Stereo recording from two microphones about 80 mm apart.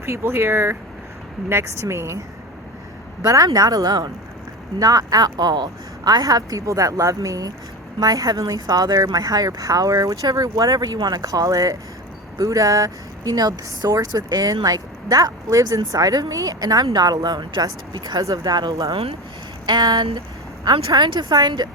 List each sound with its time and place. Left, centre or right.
0.0 s speech: right
18.2 s speech: right
19.6 s speech: right